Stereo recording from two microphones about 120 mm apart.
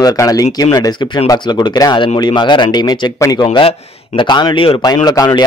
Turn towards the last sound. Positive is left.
turn(degrees=35)  # may be behind; listen again after turning